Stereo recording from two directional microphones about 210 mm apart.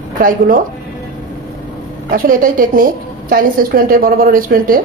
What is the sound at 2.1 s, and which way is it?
A woman's voice, 40° right (ahead or behind).